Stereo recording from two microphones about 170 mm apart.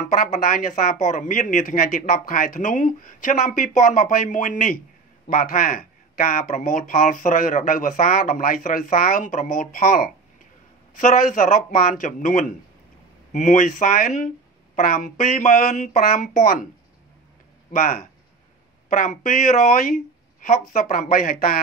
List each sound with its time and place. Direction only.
0.1 s speech: 55° left (ahead or behind)
17.7 s speech: 55° left (ahead or behind)